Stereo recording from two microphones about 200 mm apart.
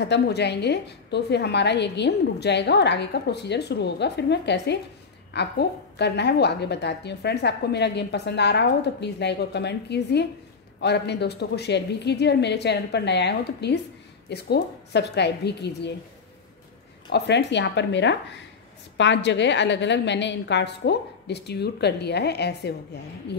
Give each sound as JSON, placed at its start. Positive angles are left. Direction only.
{"t": 0.0, "sound": "a woman's voice", "side_deg": 60}
{"t": 17.1, "sound": "a woman's voice", "side_deg": 60}